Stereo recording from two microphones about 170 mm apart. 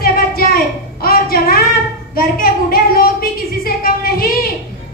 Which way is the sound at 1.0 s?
60° left (ahead or behind).